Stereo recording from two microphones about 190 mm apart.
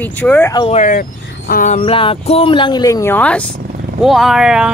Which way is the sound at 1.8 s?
30° left (ahead or behind).